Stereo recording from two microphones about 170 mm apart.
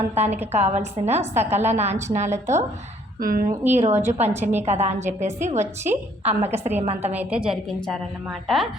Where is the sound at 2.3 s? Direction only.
15° right (ahead or behind).